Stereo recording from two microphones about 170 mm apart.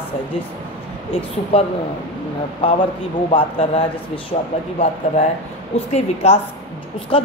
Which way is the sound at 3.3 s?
30° left (ahead or behind).